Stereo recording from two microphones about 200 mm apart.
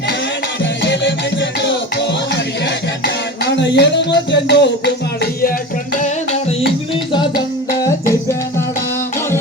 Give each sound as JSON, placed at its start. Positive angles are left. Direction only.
{"t": 0.6, "sound": "music", "side_deg": 65}
{"t": 7.1, "sound": "music", "side_deg": 25}